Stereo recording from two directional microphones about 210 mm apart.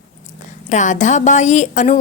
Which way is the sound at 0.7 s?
35° left (ahead or behind).